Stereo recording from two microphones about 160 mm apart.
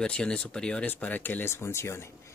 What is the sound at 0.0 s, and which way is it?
Speech, 5° left (ahead or behind).